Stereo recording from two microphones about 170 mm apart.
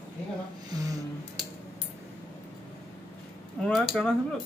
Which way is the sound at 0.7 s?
20° right (ahead or behind).